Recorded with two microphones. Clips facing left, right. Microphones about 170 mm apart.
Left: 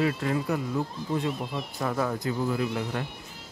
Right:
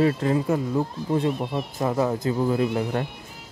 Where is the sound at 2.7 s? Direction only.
40° right (ahead or behind).